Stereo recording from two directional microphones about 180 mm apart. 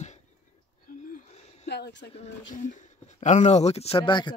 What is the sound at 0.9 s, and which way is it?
Wheeze, 50° left (ahead or behind).